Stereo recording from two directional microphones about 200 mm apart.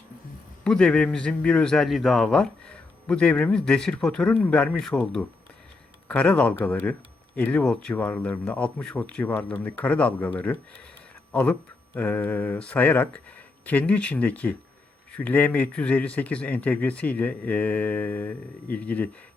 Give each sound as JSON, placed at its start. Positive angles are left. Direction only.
{"t": 0.6, "sound": "a man's voice", "side_deg": 5}